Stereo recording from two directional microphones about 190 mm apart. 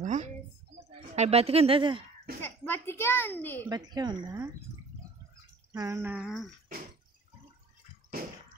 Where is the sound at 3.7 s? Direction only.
20° right (ahead or behind).